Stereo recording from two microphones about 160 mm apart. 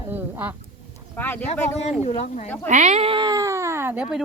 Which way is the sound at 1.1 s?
10° left (ahead or behind).